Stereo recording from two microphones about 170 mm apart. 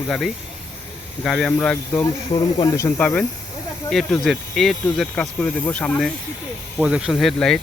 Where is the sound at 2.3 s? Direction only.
20° left (ahead or behind).